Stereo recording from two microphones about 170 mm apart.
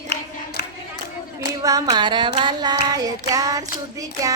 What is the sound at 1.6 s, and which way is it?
Child singing, 20° right (ahead or behind).